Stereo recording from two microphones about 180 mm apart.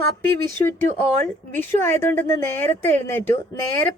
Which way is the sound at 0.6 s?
20° left (ahead or behind).